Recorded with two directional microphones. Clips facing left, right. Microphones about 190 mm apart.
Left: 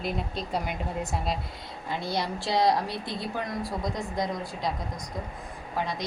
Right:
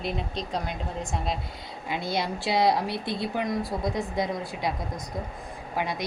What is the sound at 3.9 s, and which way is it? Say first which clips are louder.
Speech: right 2 dB; 10° right (ahead or behind).